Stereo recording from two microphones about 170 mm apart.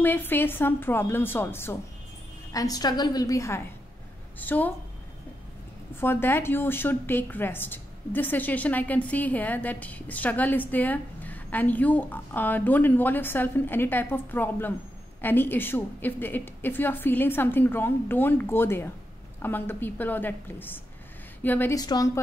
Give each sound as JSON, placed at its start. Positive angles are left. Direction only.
{"t": 0.0, "sound": "a woman's voice", "side_deg": 10}
{"t": 5.9, "sound": "a woman's voice", "side_deg": 15}
{"t": 21.7, "sound": "a woman's voice", "side_deg": 20}